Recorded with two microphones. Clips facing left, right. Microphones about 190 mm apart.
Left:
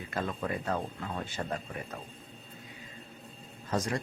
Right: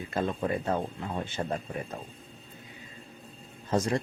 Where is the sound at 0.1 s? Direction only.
25° right (ahead or behind).